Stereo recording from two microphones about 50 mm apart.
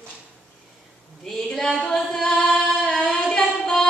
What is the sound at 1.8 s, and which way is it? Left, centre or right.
Singing, centre.